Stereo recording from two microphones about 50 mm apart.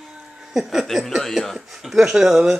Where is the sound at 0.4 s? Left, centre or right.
Centre.